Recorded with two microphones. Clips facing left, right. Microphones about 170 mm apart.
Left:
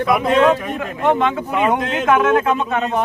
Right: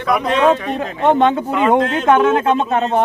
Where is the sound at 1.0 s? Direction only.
35° right (ahead or behind).